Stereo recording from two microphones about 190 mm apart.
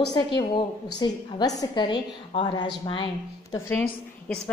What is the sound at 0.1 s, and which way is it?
A woman's voice, 25° left (ahead or behind).